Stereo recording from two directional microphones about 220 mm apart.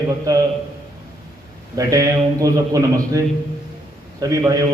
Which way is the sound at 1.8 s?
15° right (ahead or behind).